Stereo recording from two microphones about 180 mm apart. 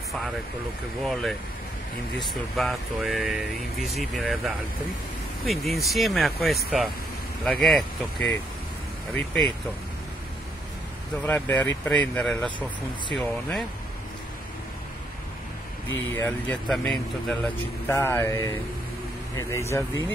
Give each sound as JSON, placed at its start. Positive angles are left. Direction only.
{"t": 1.0, "sound": "speech", "side_deg": 5}
{"t": 9.1, "sound": "speech", "side_deg": 5}
{"t": 11.2, "sound": "speech", "side_deg": 10}
{"t": 16.3, "sound": "speech", "side_deg": 5}